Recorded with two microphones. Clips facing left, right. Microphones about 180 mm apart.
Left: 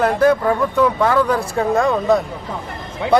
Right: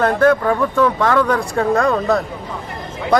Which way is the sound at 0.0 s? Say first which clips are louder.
Right 1 dB; 10° left (ahead or behind).